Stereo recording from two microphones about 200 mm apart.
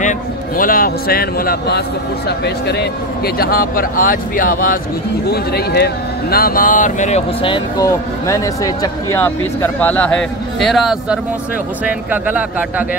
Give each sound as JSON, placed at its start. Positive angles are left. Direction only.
{"t": 0.6, "sound": "speech", "side_deg": 45}